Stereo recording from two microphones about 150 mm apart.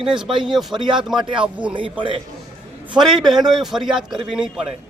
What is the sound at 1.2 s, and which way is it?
Speech, 35° right (ahead or behind).